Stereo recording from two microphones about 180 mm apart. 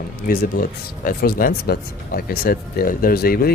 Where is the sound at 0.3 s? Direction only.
55° left (ahead or behind).